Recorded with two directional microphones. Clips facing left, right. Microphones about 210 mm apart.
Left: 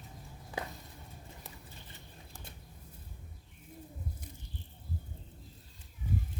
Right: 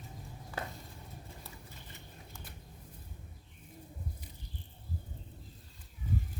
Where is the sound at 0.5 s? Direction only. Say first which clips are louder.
Left 1 dB; 15° left (ahead or behind).